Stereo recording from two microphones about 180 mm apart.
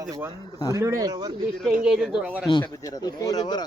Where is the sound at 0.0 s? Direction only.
20° right (ahead or behind).